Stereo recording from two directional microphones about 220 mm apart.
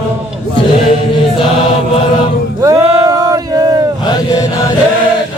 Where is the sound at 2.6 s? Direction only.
15° right (ahead or behind).